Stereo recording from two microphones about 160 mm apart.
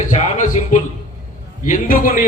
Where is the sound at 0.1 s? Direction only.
50° left (ahead or behind).